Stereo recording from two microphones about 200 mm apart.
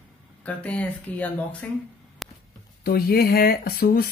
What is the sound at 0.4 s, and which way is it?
Speech, 5° left (ahead or behind).